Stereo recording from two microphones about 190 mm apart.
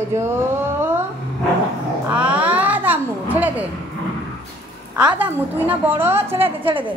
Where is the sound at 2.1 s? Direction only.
5° right (ahead or behind).